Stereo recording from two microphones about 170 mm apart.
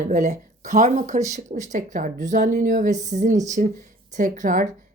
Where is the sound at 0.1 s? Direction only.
45° right (ahead or behind).